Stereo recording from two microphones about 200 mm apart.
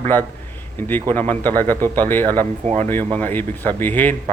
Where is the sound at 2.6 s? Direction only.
30° right (ahead or behind).